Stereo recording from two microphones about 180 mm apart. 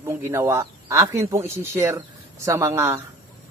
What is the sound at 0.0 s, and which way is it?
A woman's voice, 15° right (ahead or behind).